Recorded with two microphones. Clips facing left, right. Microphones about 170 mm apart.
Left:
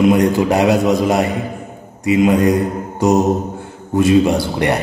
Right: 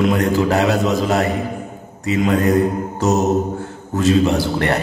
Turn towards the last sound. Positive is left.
turn(degrees=15)  # may be behind; listen again after turning